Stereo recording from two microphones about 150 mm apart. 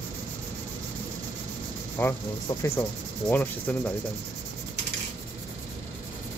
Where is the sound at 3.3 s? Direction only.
10° left (ahead or behind).